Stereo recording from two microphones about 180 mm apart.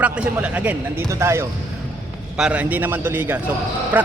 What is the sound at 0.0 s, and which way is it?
Speech, 10° right (ahead or behind).